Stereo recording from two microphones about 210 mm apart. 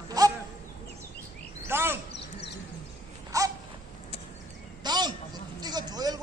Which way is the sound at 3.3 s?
15° right (ahead or behind).